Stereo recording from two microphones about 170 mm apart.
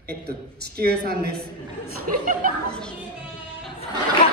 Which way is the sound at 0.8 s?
65° right (ahead or behind).